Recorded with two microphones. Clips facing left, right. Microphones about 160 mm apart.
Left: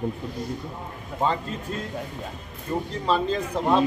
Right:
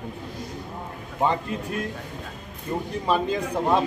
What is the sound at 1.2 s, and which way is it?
Speech, 15° right (ahead or behind).